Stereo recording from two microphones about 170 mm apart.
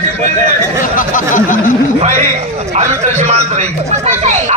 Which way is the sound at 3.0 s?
45° right (ahead or behind).